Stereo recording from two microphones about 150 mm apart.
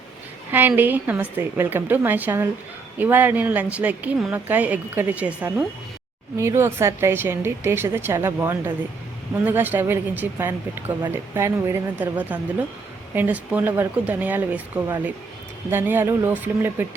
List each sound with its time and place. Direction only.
0.8 s speech: 10° right (ahead or behind)